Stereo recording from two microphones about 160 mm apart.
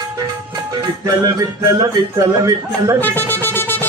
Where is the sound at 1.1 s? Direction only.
20° right (ahead or behind).